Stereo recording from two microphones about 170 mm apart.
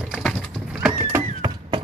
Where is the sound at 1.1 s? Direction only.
20° right (ahead or behind).